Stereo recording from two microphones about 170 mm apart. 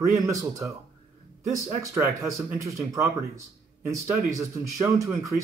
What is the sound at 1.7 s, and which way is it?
A man's voice, 15° right (ahead or behind).